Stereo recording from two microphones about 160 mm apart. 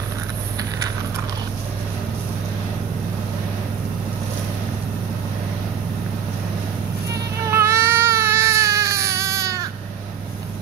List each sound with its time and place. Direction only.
7.4 s baby cry: 15° right (ahead or behind)